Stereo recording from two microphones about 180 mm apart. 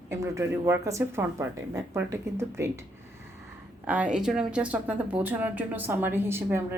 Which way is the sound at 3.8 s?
5° right (ahead or behind).